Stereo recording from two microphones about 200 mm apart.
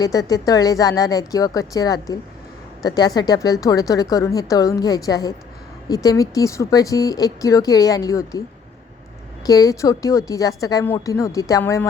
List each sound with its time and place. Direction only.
0.0 s speech: 20° left (ahead or behind)
9.5 s speech: 15° left (ahead or behind)